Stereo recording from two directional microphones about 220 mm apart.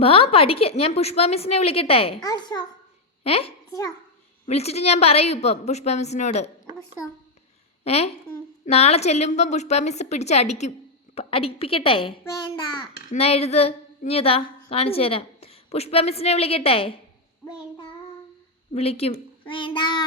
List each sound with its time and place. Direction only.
0.0 s a woman's voice: 25° left (ahead or behind)
7.9 s a woman's voice: 30° left (ahead or behind)
18.7 s a woman's voice: 30° left (ahead or behind)